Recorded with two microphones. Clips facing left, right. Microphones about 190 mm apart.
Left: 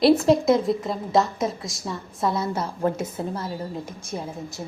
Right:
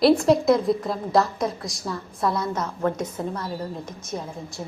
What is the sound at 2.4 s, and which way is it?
Speech, 30° left (ahead or behind).